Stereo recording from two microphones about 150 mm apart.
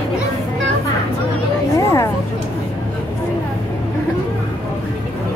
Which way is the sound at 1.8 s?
20° left (ahead or behind).